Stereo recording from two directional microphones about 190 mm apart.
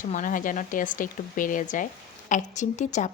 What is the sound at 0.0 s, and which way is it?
A woman's voice, 45° left (ahead or behind).